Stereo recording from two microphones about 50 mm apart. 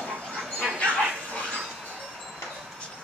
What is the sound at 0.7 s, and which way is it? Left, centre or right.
Bow-wow, left.